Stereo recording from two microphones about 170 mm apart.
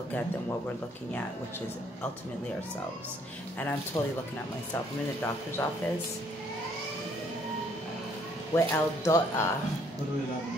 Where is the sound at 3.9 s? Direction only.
10° left (ahead or behind).